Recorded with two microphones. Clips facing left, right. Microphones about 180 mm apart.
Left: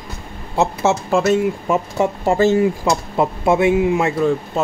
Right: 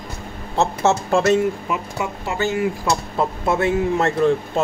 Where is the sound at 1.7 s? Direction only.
45° left (ahead or behind); by 2.9 s 30° left (ahead or behind).